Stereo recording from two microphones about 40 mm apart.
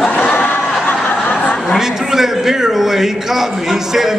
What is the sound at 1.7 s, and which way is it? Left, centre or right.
A man's voice, centre.